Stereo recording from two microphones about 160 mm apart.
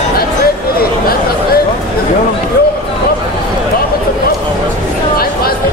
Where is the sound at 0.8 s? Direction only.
70° left (ahead or behind).